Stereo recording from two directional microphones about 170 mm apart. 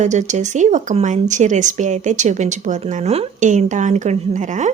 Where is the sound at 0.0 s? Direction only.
45° right (ahead or behind).